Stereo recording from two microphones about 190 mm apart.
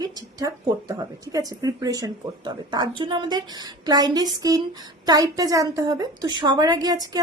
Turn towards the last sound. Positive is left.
turn(degrees=-20)  # may be behind; listen again after turning